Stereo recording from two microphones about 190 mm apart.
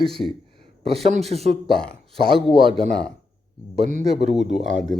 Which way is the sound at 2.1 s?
30° right (ahead or behind).